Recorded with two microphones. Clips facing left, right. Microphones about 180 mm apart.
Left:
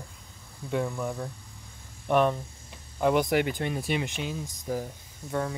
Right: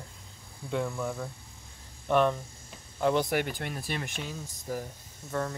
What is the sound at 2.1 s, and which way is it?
Speech, 10° left (ahead or behind).